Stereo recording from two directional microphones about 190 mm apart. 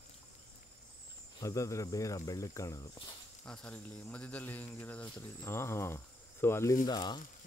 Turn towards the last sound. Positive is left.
turn(degrees=20)  # may be behind; listen again after turning